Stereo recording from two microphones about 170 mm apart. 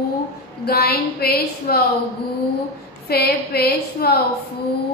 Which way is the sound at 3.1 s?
70° left (ahead or behind).